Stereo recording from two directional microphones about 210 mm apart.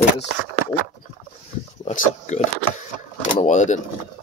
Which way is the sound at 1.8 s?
35° left (ahead or behind).